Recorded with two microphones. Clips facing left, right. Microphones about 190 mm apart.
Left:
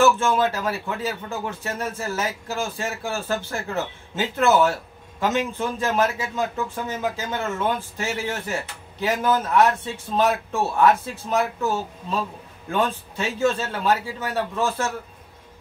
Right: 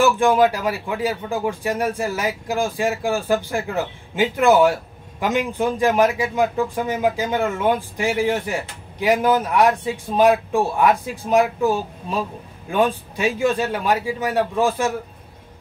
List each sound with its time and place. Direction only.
0.0 s speech: 15° right (ahead or behind)